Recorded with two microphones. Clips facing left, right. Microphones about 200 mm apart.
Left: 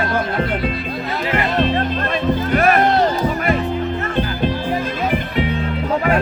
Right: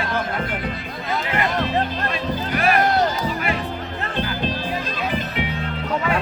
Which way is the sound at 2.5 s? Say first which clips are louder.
Left 4 dB; 50° left (ahead or behind).